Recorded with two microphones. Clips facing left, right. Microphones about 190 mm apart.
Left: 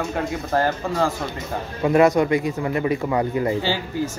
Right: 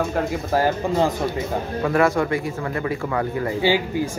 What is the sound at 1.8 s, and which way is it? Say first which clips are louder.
Speech: left 4 dB; 20° left (ahead or behind).